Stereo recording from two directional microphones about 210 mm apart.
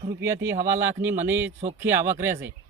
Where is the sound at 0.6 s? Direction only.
10° right (ahead or behind).